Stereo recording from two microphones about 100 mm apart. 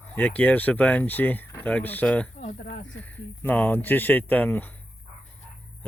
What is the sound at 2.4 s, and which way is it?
Speech, 90° left.